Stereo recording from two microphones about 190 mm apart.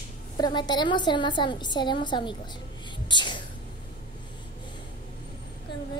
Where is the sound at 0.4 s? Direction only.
25° left (ahead or behind).